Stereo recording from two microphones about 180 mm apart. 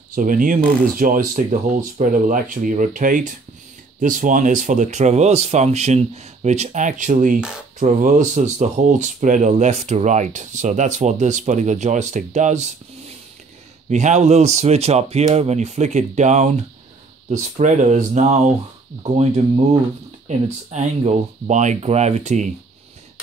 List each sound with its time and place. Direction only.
0.1 s speech: 45° right (ahead or behind)